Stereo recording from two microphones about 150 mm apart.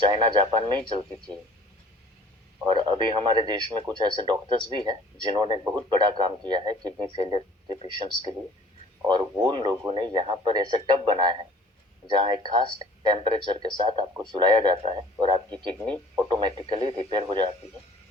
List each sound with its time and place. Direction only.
0.0 s speech: 35° right (ahead or behind)
2.6 s speech: 35° right (ahead or behind)